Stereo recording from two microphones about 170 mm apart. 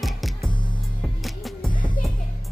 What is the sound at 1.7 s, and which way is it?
Music, 25° left (ahead or behind).